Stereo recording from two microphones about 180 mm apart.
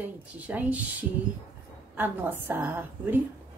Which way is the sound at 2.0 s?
10° right (ahead or behind).